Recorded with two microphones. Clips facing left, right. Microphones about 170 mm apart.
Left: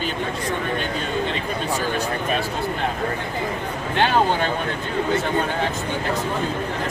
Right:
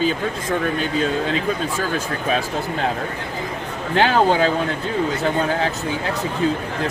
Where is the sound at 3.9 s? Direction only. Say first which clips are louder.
Right 3 dB; 90° right.